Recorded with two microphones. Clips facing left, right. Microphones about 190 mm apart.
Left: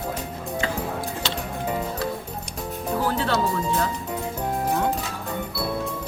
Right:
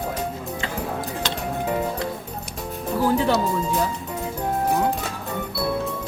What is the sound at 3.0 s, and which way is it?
Music, 15° right (ahead or behind).